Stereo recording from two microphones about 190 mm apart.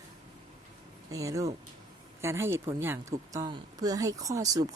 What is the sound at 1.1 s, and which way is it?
Speech, 15° right (ahead or behind).